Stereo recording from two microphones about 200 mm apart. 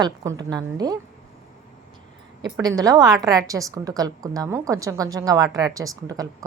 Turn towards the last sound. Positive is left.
turn(degrees=-15)  # may be behind; listen again after turning